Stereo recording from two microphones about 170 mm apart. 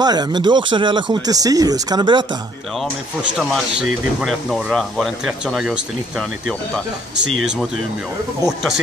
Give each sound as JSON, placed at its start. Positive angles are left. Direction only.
{"t": 0.0, "sound": "speech", "side_deg": -25}
{"t": 3.3, "sound": "speech", "side_deg": -5}